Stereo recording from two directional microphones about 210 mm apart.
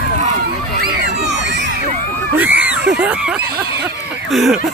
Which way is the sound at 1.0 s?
55° right (ahead or behind).